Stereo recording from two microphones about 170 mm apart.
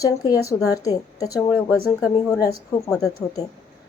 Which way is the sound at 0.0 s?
20° left (ahead or behind).